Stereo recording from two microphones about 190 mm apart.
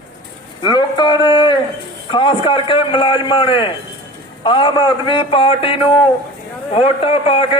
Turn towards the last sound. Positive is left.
turn(degrees=30)  # may be behind; listen again after turning